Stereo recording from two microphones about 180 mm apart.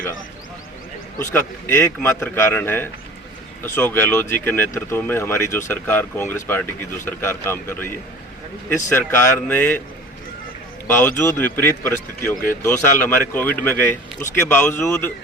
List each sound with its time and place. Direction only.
1.2 s speech: 10° left (ahead or behind)
10.8 s speech: 10° left (ahead or behind)
12.3 s speech: 50° left (ahead or behind)
13.0 s speech: 10° left (ahead or behind)